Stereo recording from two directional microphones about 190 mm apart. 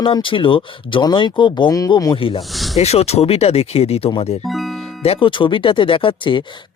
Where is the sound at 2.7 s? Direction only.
35° left (ahead or behind).